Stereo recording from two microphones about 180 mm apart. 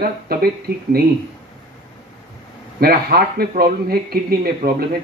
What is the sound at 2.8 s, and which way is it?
Speech, 60° right (ahead or behind).